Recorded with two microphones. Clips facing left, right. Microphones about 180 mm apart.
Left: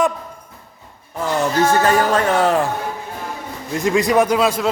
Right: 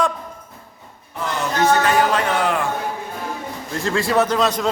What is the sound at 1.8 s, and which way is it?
Speech, 40° left (ahead or behind).